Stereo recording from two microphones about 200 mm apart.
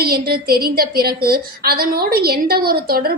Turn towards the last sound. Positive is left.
turn(degrees=-50)  # may be behind; listen again after turning